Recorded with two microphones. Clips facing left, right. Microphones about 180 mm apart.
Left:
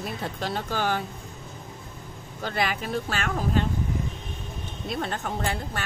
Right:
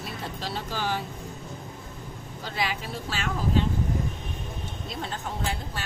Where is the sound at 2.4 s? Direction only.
55° left (ahead or behind).